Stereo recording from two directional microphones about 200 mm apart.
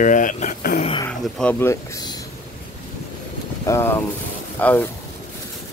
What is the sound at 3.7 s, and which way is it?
Speech, 15° left (ahead or behind).